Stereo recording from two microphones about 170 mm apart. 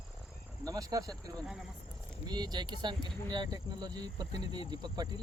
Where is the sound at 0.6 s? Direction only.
20° right (ahead or behind).